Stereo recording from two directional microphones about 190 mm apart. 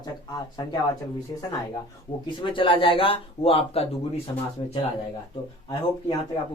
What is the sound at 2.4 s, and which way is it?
Speech, 25° left (ahead or behind).